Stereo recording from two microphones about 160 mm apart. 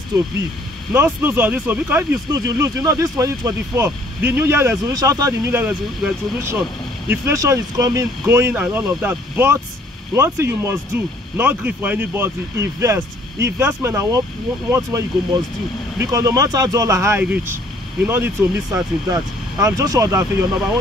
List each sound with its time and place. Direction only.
0.9 s speech: 15° right (ahead or behind)